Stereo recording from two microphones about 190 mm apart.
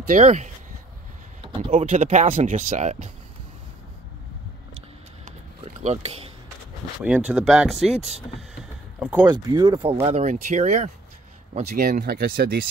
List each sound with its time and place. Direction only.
0.1 s speech: 40° right (ahead or behind)
1.4 s a sound: 30° right (ahead or behind)
1.8 s speech: 30° right (ahead or behind)
5.7 s speech: 35° right (ahead or behind)
7.0 s speech: 5° right (ahead or behind)
9.0 s speech: 5° right (ahead or behind)
9.3 s speech: 20° right (ahead or behind)
10.0 s speech: 35° right (ahead or behind)